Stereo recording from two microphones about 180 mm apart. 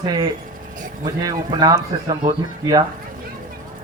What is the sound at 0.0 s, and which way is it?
Speech, 20° right (ahead or behind).